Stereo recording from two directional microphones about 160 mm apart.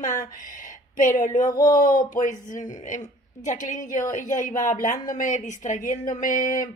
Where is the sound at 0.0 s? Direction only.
55° left (ahead or behind).